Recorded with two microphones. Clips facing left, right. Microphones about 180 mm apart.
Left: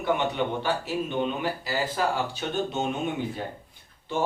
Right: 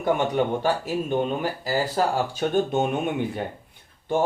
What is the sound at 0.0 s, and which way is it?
Speech, 45° right (ahead or behind).